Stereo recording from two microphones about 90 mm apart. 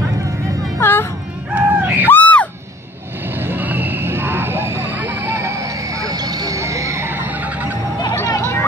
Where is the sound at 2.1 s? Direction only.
15° left (ahead or behind).